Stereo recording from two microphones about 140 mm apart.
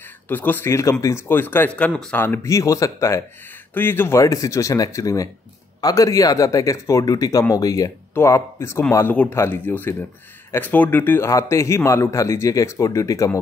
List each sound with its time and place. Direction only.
0.3 s a man's voice: 15° left (ahead or behind)